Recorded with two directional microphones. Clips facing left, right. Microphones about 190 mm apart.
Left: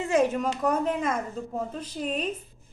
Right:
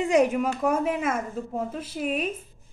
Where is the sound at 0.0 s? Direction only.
15° right (ahead or behind).